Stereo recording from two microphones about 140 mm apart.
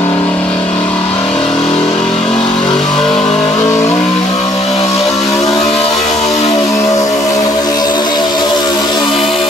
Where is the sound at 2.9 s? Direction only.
5° left (ahead or behind).